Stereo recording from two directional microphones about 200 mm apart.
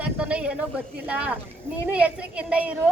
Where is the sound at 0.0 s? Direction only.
5° right (ahead or behind).